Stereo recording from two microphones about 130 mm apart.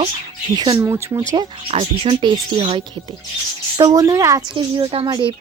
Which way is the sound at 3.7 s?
30° right (ahead or behind).